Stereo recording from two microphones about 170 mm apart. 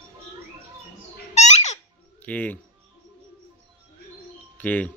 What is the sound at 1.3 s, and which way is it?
Babbling, 40° left (ahead or behind).